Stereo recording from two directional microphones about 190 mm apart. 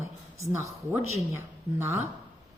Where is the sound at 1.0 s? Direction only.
90° left.